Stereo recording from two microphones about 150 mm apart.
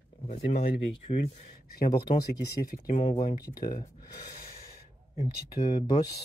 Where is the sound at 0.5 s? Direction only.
40° left (ahead or behind).